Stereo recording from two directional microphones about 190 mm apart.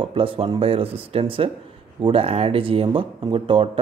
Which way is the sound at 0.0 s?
30° right (ahead or behind).